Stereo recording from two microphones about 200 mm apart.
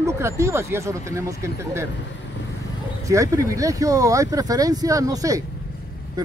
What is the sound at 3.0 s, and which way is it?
Speech, 15° right (ahead or behind).